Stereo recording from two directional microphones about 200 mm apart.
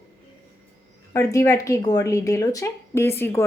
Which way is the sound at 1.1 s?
15° left (ahead or behind).